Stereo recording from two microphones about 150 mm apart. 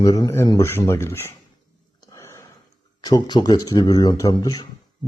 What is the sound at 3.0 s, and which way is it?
Speech, 25° left (ahead or behind).